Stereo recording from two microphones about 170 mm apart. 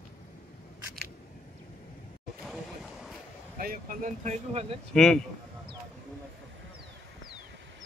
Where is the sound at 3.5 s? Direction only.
60° right (ahead or behind); by 4.6 s 45° right (ahead or behind).